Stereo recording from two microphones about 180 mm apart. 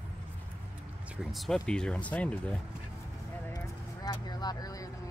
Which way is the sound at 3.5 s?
20° left (ahead or behind).